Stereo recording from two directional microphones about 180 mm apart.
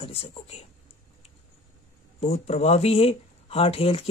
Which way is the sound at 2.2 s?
35° left (ahead or behind).